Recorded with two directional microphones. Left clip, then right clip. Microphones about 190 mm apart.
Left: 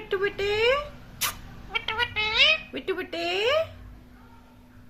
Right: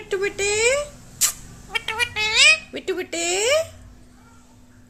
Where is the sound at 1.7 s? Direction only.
25° right (ahead or behind).